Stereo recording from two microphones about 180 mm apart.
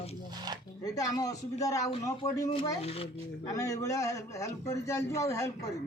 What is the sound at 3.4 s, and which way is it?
A man's voice, 20° left (ahead or behind).